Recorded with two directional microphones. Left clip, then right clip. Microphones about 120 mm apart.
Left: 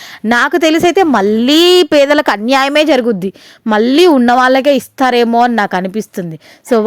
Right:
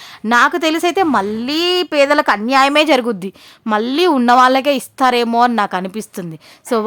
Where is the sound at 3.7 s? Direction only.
40° left (ahead or behind).